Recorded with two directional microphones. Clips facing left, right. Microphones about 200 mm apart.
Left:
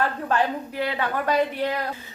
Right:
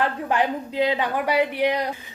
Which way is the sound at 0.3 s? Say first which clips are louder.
Right 1 dB; 15° right (ahead or behind).